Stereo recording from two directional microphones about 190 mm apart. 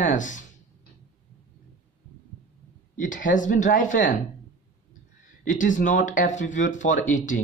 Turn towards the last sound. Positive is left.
turn(degrees=40)  # may be behind; listen again after turning